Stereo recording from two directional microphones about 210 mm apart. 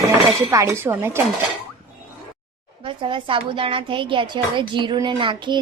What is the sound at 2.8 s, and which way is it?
A woman's voice, 25° right (ahead or behind).